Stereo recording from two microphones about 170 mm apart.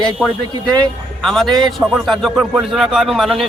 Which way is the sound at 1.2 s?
Centre (ahead or behind).